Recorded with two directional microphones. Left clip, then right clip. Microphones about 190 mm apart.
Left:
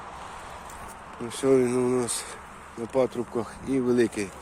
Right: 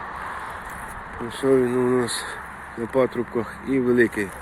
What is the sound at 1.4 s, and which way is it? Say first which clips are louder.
Speech: right 2 dB; 40° left (ahead or behind).